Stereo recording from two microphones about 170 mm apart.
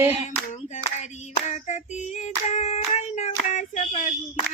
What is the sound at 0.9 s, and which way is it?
Hands, 40° left (ahead or behind).